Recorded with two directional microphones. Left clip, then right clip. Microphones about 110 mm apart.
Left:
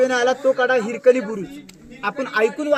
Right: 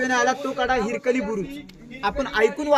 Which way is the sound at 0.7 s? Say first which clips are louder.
Left 6 dB; 30° right (ahead or behind).